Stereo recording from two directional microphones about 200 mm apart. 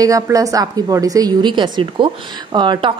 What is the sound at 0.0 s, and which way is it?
A woman's voice, 15° right (ahead or behind).